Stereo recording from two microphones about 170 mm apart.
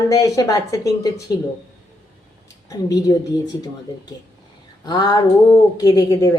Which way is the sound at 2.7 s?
20° left (ahead or behind).